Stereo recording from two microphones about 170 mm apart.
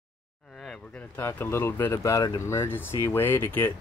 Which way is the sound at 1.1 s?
15° left (ahead or behind).